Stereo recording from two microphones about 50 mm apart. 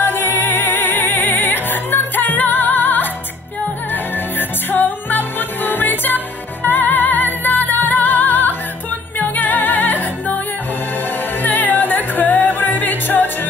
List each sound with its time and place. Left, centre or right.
0.0 s music: left
11.4 s music: left